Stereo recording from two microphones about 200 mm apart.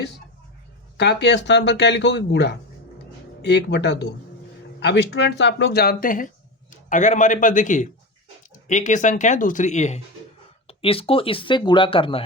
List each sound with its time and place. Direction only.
0.9 s speech: 60° left (ahead or behind); by 12.2 s 25° left (ahead or behind)